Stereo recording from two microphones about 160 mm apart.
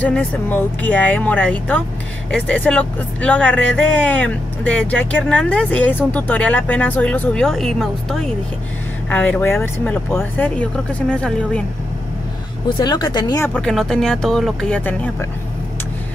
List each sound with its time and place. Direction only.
0.0 s speech: 10° left (ahead or behind)
12.6 s speech: 30° left (ahead or behind)
13.5 s speech: 5° left (ahead or behind)